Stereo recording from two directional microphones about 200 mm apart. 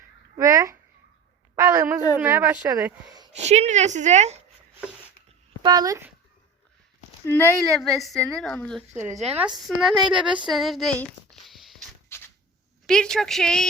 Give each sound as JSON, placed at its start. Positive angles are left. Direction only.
{"t": 0.3, "sound": "a woman's voice", "side_deg": -15}
{"t": 3.3, "sound": "a woman's voice", "side_deg": -35}
{"t": 5.6, "sound": "a woman's voice", "side_deg": -20}
{"t": 7.3, "sound": "speech", "side_deg": 10}
{"t": 7.8, "sound": "a woman's voice", "side_deg": 0}
{"t": 8.9, "sound": "a woman's voice", "side_deg": -10}
{"t": 12.1, "sound": "a sound", "side_deg": 10}
{"t": 12.9, "sound": "a woman's voice", "side_deg": 5}